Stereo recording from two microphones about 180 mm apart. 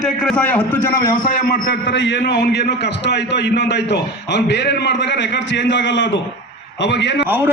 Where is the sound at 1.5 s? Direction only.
60° left (ahead or behind).